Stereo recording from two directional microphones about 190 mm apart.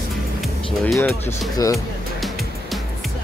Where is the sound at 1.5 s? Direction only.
15° left (ahead or behind).